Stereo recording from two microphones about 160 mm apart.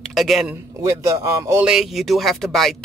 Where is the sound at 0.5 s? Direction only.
15° right (ahead or behind).